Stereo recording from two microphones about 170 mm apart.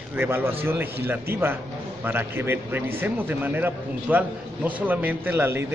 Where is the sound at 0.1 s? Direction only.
10° right (ahead or behind).